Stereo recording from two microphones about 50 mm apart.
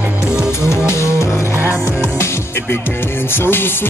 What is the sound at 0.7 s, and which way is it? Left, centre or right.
Music, left.